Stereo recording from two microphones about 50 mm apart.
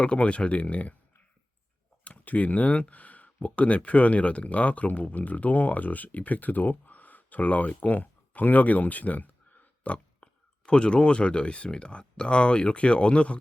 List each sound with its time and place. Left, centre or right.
0.0 s speech: left
2.0 s speech: left
10.2 s a sound: left
10.7 s speech: left